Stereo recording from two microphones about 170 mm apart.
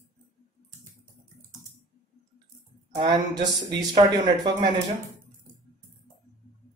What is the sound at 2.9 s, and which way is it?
Speech, 25° right (ahead or behind).